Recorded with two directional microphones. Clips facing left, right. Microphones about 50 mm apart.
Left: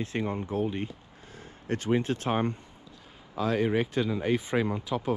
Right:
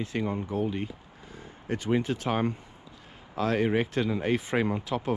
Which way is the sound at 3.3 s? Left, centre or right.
Right.